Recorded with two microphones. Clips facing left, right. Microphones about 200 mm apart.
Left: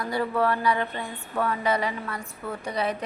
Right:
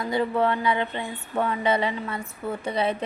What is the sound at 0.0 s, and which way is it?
A woman's voice, 20° right (ahead or behind).